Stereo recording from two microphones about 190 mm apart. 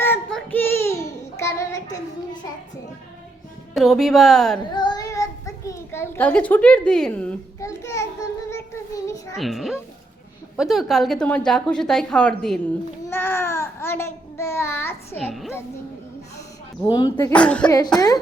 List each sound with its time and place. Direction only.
0.0 s child singing: 5° left (ahead or behind)
3.8 s a woman's voice: centre (ahead or behind)
4.7 s child singing: 20° left (ahead or behind)
9.4 s a woman's voice: centre (ahead or behind)
15.3 s a woman's voice: centre (ahead or behind)
16.8 s speech: 20° left (ahead or behind); by 17.7 s 5° left (ahead or behind)
17.7 s speech: 20° left (ahead or behind)